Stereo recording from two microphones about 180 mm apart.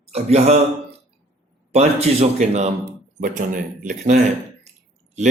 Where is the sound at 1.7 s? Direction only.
35° right (ahead or behind).